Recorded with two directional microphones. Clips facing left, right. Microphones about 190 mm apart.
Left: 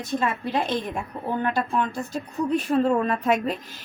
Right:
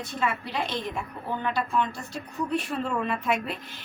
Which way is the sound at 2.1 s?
40° left (ahead or behind).